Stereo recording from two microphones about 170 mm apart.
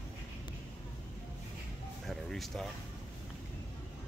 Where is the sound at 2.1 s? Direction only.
Centre (ahead or behind).